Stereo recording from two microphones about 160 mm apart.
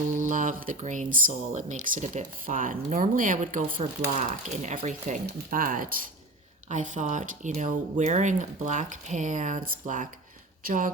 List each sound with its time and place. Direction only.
0.2 s speech: 50° right (ahead or behind)
4.1 s speech: 45° right (ahead or behind)